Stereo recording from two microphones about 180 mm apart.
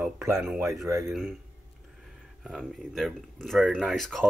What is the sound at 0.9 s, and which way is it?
Speech, 15° right (ahead or behind).